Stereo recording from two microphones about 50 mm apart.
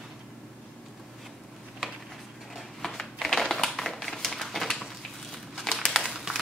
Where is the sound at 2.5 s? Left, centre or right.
Centre.